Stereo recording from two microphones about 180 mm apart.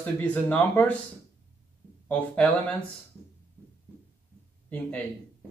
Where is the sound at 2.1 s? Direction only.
5° left (ahead or behind).